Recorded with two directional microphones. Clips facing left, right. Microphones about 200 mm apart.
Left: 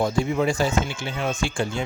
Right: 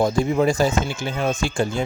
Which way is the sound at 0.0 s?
40° right (ahead or behind).